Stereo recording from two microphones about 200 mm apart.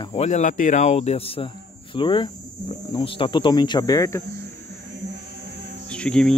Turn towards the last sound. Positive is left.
turn(degrees=5)  # may be behind; listen again after turning